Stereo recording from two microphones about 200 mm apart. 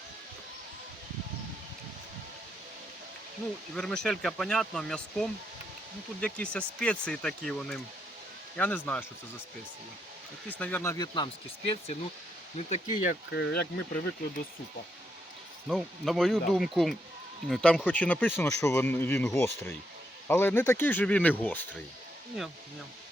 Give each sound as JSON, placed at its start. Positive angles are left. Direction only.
{"t": 3.8, "sound": "speech", "side_deg": 5}
{"t": 10.6, "sound": "speech", "side_deg": 10}
{"t": 10.9, "sound": "speech", "side_deg": 20}
{"t": 13.3, "sound": "speech", "side_deg": 55}
{"t": 15.6, "sound": "speech", "side_deg": 0}